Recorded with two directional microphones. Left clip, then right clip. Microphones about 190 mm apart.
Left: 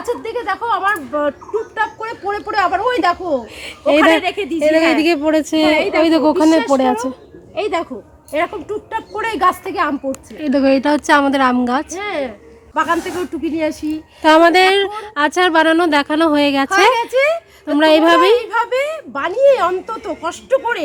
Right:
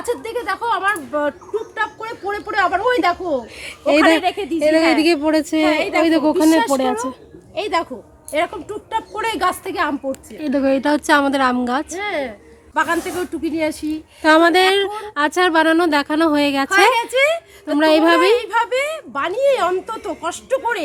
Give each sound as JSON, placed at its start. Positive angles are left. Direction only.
{"t": 0.0, "sound": "speech", "side_deg": 5}
{"t": 4.2, "sound": "speech", "side_deg": 30}
{"t": 4.9, "sound": "speech", "side_deg": -5}
{"t": 8.3, "sound": "speech", "side_deg": -5}
{"t": 11.9, "sound": "speech", "side_deg": 20}
{"t": 12.7, "sound": "speech", "side_deg": 0}